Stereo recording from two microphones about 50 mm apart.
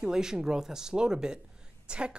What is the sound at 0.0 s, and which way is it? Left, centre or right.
A woman's voice, centre.